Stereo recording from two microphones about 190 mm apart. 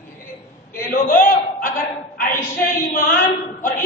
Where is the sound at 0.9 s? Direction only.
50° left (ahead or behind).